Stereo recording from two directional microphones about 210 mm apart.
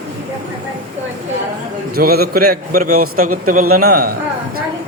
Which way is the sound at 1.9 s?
45° right (ahead or behind).